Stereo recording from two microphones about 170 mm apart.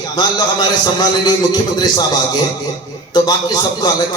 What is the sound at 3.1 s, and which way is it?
Speech, 25° left (ahead or behind).